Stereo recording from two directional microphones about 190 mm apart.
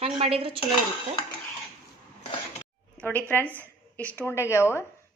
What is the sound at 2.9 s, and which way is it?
A woman's voice, 10° left (ahead or behind).